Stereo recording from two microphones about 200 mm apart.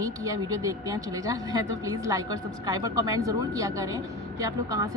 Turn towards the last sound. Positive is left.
turn(degrees=-15)  # may be behind; listen again after turning